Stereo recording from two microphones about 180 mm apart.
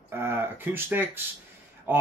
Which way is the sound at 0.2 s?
10° right (ahead or behind).